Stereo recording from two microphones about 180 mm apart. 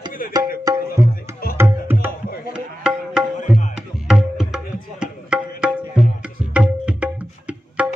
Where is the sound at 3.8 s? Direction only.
Centre (ahead or behind).